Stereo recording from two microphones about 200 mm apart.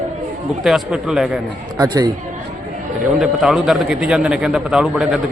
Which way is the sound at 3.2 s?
Centre (ahead or behind).